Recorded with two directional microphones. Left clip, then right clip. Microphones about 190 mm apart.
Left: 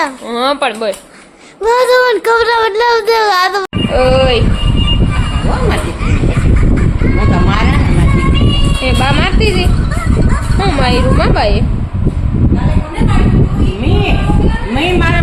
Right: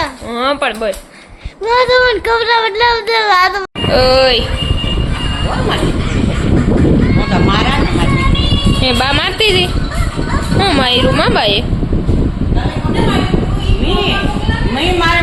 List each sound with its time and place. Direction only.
0.3 s speech: 15° left (ahead or behind)
1.6 s speech: 45° left (ahead or behind)
3.9 s a woman's voice: 5° right (ahead or behind)
8.8 s a woman's voice: 5° right (ahead or behind)
10.6 s a woman's voice: 5° right (ahead or behind)